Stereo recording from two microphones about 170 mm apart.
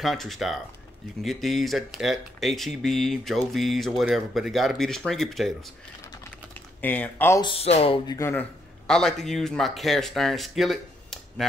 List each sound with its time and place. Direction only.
0.0 s speech: centre (ahead or behind)
6.8 s speech: 10° left (ahead or behind)
7.4 s speech: 35° left (ahead or behind)
8.1 s a man's voice: 15° left (ahead or behind)